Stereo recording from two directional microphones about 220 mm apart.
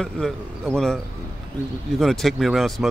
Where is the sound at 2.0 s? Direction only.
Centre (ahead or behind).